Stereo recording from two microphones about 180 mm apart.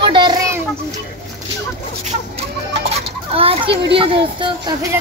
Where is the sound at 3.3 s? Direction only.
30° right (ahead or behind).